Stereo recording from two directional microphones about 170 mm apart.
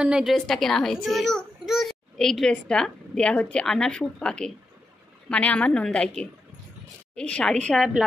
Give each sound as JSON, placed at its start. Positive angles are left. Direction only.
{"t": 0.0, "sound": "a child's voice", "side_deg": -5}